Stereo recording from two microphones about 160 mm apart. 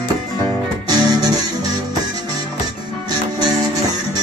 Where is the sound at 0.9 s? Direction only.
25° right (ahead or behind).